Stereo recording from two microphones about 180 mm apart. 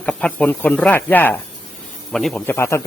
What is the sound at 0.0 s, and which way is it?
A man's voice, 5° left (ahead or behind).